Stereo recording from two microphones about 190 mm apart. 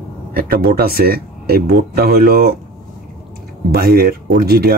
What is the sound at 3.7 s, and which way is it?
Speech, 50° right (ahead or behind).